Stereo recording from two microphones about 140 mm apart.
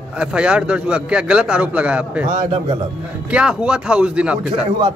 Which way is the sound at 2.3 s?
55° right (ahead or behind).